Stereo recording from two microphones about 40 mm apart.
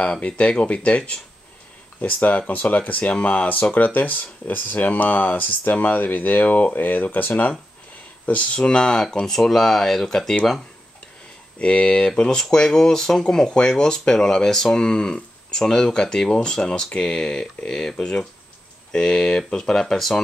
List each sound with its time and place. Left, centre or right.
0.2 s speech: left
2.0 s speech: left
8.5 s speech: left
9.2 s speech: centre
11.5 s speech: left
12.4 s speech: centre